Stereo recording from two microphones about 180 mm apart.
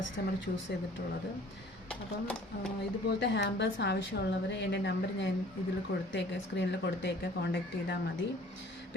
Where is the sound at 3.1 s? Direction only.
75° left (ahead or behind).